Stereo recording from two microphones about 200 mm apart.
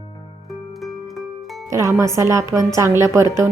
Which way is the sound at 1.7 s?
15° right (ahead or behind).